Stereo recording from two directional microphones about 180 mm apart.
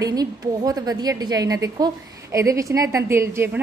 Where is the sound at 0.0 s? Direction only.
20° right (ahead or behind).